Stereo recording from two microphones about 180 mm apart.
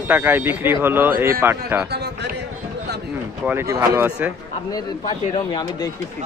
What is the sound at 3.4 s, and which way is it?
Speech, 15° right (ahead or behind).